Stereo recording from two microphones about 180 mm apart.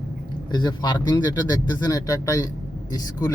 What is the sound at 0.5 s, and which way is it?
Speech, 20° left (ahead or behind).